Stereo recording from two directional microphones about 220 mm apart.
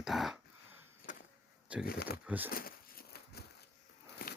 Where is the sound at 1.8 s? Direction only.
45° left (ahead or behind).